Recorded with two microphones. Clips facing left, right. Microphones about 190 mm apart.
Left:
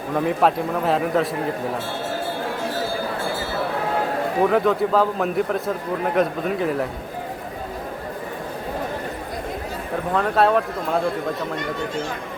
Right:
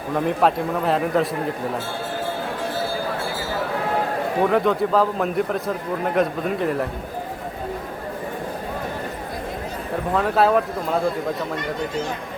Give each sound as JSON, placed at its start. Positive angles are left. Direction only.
{"t": 0.1, "sound": "a man's voice", "side_deg": 0}
{"t": 4.4, "sound": "a man's voice", "side_deg": 0}
{"t": 10.2, "sound": "a man's voice", "side_deg": 0}